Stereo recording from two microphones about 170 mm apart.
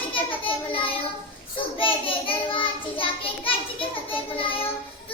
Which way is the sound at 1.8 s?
30° left (ahead or behind).